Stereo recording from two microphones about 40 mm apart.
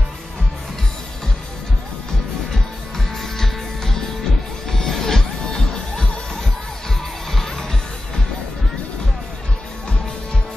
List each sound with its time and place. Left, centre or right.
3.3 s music: centre
7.3 s music: centre